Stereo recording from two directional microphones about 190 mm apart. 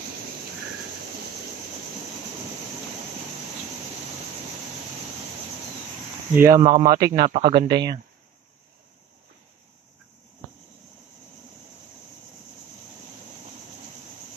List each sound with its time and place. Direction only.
6.3 s speech: 15° right (ahead or behind)
6.6 s speech: 25° right (ahead or behind)
7.2 s speech: 35° right (ahead or behind)